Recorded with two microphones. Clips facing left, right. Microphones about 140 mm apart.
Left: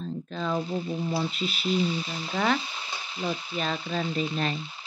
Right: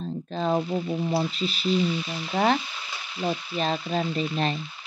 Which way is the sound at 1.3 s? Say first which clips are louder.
Right 2 dB; 35° right (ahead or behind).